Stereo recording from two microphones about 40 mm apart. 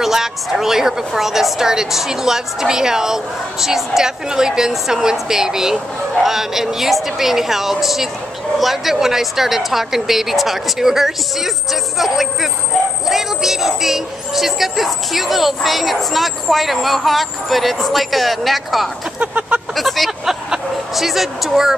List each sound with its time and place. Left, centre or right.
0.0 s a woman's voice: centre
19.1 s a sound: right
19.7 s speech: centre
20.1 s vehicle: centre
20.9 s speech: centre